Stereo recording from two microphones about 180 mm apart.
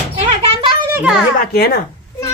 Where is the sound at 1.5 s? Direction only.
60° left (ahead or behind).